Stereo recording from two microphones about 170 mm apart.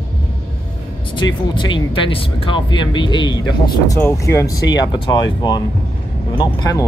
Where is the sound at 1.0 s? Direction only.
30° left (ahead or behind).